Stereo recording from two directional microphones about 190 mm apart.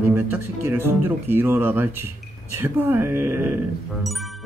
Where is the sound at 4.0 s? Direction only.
Centre (ahead or behind).